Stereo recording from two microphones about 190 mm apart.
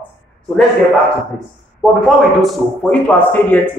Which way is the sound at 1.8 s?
Centre (ahead or behind).